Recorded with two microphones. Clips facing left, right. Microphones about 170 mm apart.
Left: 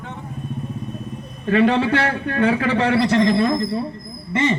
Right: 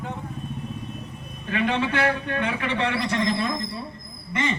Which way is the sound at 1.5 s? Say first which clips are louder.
Left 8 dB; 35° left (ahead or behind).